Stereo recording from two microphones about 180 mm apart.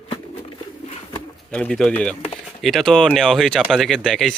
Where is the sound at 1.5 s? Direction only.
5° left (ahead or behind).